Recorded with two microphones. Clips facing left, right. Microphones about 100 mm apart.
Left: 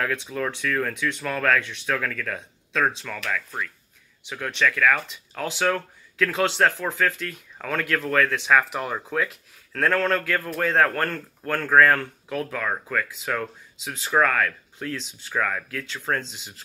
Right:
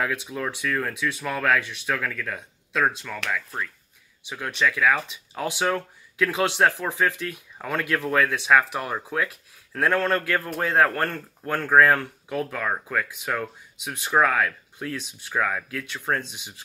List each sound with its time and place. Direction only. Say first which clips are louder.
0.0 s speech: left 1 dB; 10° right (ahead or behind)